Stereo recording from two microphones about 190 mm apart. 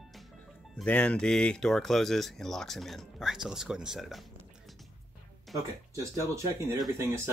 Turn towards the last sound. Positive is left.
turn(degrees=-15)  # may be behind; listen again after turning